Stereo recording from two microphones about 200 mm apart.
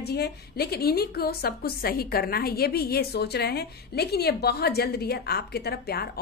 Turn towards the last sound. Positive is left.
turn(degrees=50)  # may be behind; listen again after turning